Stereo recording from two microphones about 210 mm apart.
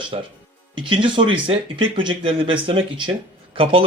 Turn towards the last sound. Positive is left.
turn(degrees=-25)  # may be behind; listen again after turning